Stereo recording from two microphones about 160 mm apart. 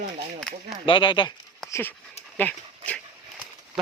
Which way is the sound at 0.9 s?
30° left (ahead or behind).